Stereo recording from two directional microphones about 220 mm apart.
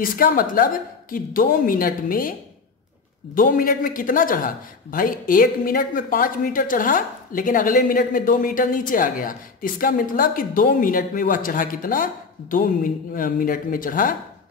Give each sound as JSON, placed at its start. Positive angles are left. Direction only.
{"t": 0.0, "sound": "a man's voice", "side_deg": 40}
{"t": 3.3, "sound": "a man's voice", "side_deg": 40}